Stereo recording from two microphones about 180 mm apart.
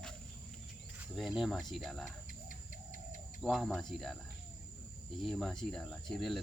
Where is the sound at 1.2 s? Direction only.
Centre (ahead or behind).